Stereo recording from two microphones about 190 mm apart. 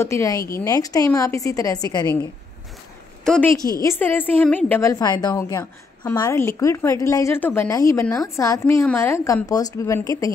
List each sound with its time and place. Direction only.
0.0 s a woman's voice: 15° left (ahead or behind)
3.8 s a woman's voice: 10° left (ahead or behind)